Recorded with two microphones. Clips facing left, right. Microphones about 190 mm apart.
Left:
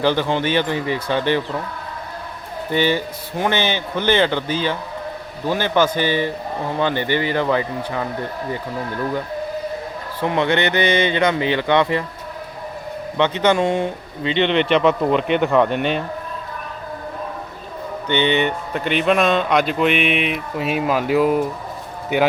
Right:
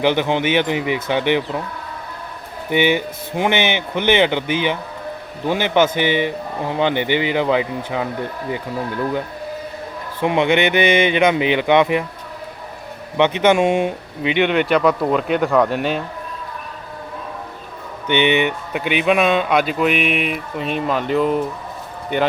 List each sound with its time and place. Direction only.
0.0 s a man's voice: 15° right (ahead or behind)
2.6 s a man's voice: 15° right (ahead or behind)
10.2 s a man's voice: 15° right (ahead or behind)
13.1 s a man's voice: 15° right (ahead or behind)
18.1 s speech: 15° right (ahead or behind); by 22.3 s 5° left (ahead or behind)